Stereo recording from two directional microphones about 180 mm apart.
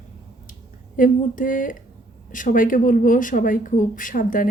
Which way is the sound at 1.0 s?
50° left (ahead or behind).